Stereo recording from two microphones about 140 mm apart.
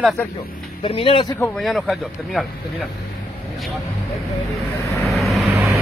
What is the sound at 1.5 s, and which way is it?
Speech, centre (ahead or behind).